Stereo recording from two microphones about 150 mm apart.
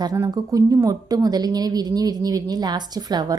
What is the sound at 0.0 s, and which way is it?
A woman's voice, 25° right (ahead or behind).